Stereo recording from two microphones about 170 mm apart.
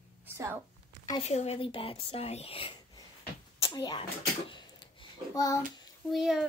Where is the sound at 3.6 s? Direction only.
25° left (ahead or behind).